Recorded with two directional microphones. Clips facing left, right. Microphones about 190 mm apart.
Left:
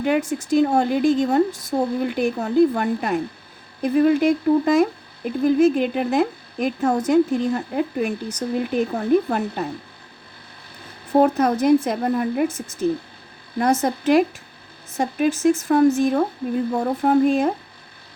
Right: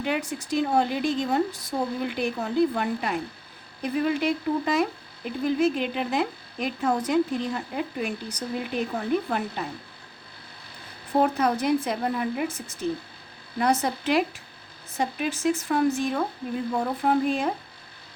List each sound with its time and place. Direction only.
0.0 s speech: 50° left (ahead or behind)
11.1 s speech: 45° left (ahead or behind)